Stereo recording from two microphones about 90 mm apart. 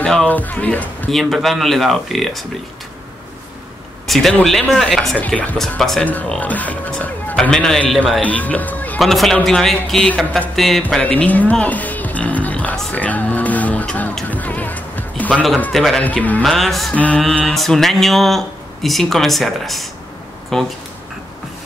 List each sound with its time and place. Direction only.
0.0 s speech: 10° left (ahead or behind)
1.1 s speech: centre (ahead or behind)
4.1 s speech: 5° left (ahead or behind)
5.1 s speech: 15° left (ahead or behind)
5.6 s speech: 5° left (ahead or behind)
6.4 s speech: 15° left (ahead or behind)
9.0 s speech: centre (ahead or behind)
11.0 s speech: 15° left (ahead or behind)
15.7 s speech: centre (ahead or behind)
16.0 s speech: 15° left (ahead or behind)
16.4 s speech: centre (ahead or behind)
16.9 s speech: 15° left (ahead or behind)